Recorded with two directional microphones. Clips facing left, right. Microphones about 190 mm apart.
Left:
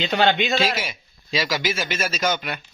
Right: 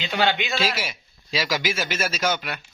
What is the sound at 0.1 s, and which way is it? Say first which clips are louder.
Speech: left 3 dB; 45° left (ahead or behind).